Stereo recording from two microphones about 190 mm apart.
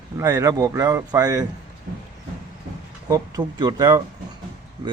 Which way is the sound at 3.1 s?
20° right (ahead or behind).